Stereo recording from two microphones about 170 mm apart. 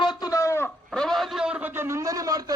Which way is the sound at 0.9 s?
Centre (ahead or behind).